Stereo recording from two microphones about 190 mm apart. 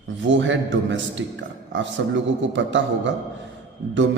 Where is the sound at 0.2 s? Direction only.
75° right (ahead or behind).